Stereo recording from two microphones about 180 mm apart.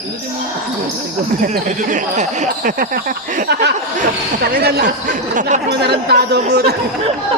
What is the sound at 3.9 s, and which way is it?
Speech, 60° right (ahead or behind).